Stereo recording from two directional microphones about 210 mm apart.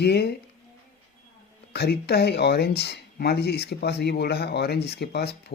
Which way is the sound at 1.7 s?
50° left (ahead or behind).